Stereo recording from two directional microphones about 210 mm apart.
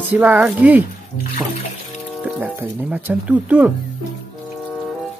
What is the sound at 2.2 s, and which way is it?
Speech, 5° right (ahead or behind).